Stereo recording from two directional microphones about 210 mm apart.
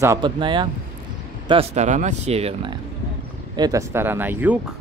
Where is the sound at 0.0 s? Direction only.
20° right (ahead or behind).